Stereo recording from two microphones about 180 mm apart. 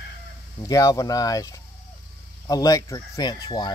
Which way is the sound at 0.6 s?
20° left (ahead or behind).